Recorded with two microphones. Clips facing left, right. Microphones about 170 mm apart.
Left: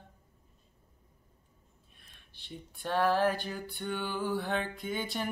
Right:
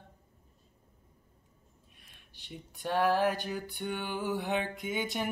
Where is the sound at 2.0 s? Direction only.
10° right (ahead or behind).